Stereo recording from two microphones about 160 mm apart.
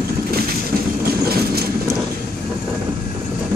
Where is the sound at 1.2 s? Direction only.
75° right (ahead or behind).